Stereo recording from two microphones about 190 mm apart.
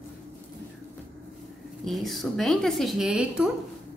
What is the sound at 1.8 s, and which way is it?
A woman's voice, centre (ahead or behind).